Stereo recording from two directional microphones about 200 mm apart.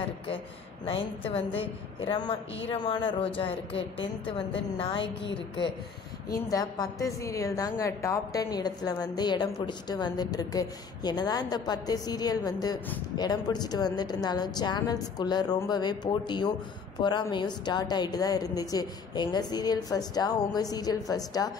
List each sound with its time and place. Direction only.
1.3 s a woman's voice: 30° left (ahead or behind)
6.3 s a woman's voice: 20° left (ahead or behind)